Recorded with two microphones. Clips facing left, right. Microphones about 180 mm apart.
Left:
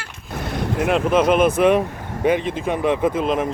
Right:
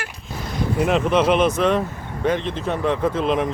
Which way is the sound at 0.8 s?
Centre (ahead or behind).